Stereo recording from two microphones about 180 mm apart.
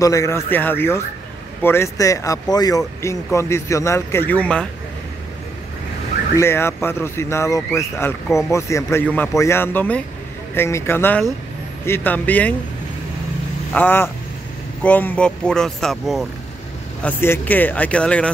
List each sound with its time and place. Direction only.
0.0 s speech: 15° left (ahead or behind)
6.3 s speech: 15° left (ahead or behind)
13.7 s speech: 10° left (ahead or behind)
17.0 s speech: 10° left (ahead or behind)